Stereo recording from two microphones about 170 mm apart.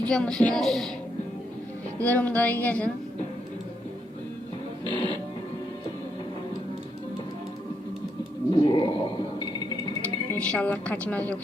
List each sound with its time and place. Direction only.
0.1 s speech: 5° left (ahead or behind)
2.0 s a woman's voice: 10° left (ahead or behind)
4.9 s music: 30° left (ahead or behind)
8.5 s a sound: 30° left (ahead or behind)
10.3 s a woman's voice: 5° left (ahead or behind)